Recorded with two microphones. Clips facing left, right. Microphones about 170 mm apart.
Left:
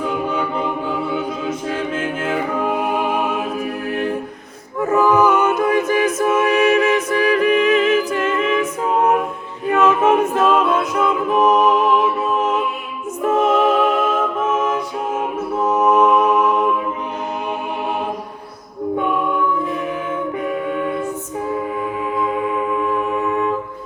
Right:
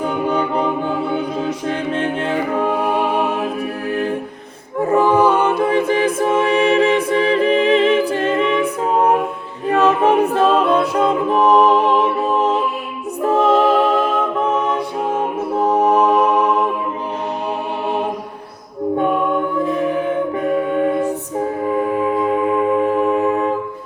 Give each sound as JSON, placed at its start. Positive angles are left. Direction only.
{"t": 0.3, "sound": "a capella", "side_deg": -35}
{"t": 1.2, "sound": "music", "side_deg": -35}
{"t": 4.8, "sound": "a capella", "side_deg": -30}
{"t": 9.6, "sound": "music", "side_deg": -35}
{"t": 20.7, "sound": "music", "side_deg": -35}
{"t": 22.8, "sound": "music", "side_deg": -35}